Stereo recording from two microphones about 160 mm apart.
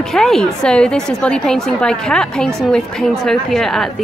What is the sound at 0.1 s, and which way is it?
A woman's voice, centre (ahead or behind).